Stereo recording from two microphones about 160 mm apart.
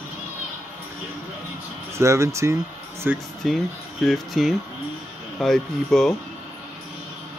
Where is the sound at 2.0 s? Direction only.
20° right (ahead or behind).